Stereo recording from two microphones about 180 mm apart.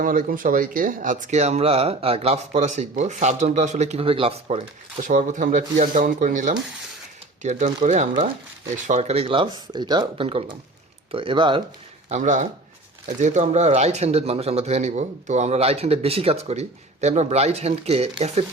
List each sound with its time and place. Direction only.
0.0 s speech: 50° right (ahead or behind)
5.0 s speech: 45° right (ahead or behind)
7.8 s speech: 30° right (ahead or behind)
12.0 s speech: 40° right (ahead or behind)